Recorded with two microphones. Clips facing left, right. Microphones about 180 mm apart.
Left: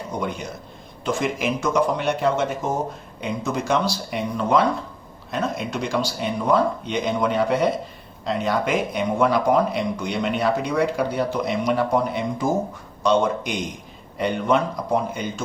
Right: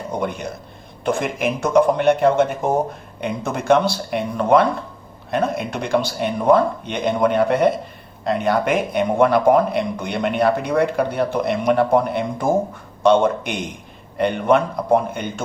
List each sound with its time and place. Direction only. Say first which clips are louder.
0.2 s speech: right 2 dB; 55° right (ahead or behind)